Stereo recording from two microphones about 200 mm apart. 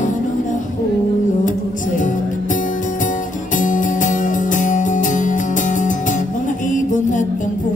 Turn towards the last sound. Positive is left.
turn(degrees=40)  # may be behind; listen again after turning